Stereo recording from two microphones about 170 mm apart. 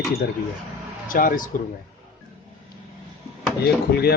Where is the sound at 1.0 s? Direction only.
55° left (ahead or behind).